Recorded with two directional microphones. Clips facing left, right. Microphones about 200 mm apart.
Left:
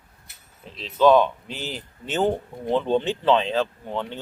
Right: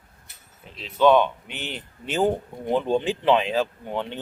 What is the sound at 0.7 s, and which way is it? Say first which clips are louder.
Speech: left 1 dB; 5° right (ahead or behind).